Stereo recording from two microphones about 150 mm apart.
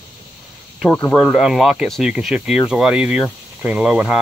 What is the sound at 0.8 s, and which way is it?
Speech, 10° left (ahead or behind).